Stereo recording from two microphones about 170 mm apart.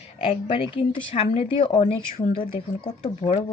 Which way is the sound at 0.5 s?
30° left (ahead or behind).